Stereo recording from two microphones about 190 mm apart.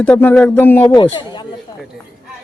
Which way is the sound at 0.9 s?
20° left (ahead or behind).